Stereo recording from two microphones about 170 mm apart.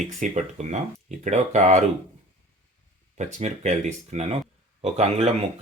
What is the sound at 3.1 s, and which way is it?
Speech, 45° right (ahead or behind).